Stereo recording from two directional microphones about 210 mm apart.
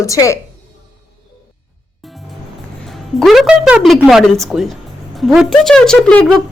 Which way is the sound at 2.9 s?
Centre (ahead or behind).